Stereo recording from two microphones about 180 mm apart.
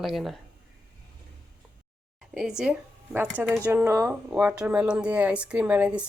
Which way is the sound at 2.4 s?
5° right (ahead or behind).